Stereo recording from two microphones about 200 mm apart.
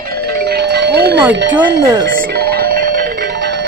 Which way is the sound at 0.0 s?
50° right (ahead or behind).